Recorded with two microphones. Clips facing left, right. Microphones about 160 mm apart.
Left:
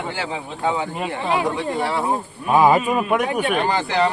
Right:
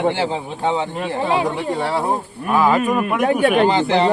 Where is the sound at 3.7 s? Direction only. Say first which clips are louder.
Right 4 dB; 25° right (ahead or behind).